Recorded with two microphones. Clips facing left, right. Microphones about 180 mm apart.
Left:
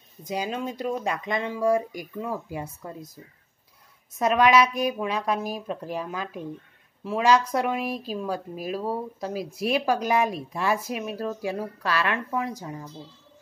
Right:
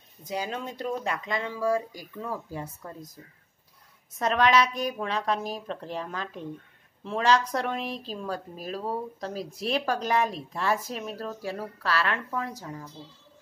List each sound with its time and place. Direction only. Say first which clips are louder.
0.2 s a woman's voice: left 3 dB; 15° left (ahead or behind)
4.2 s a woman's voice: left 3 dB; 10° left (ahead or behind)